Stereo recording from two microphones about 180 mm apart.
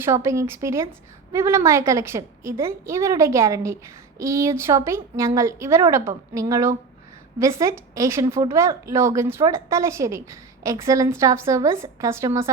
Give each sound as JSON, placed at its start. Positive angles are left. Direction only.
{"t": 0.0, "sound": "a woman's voice", "side_deg": -15}